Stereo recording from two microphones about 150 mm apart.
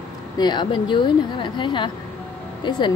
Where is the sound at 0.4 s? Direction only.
30° left (ahead or behind).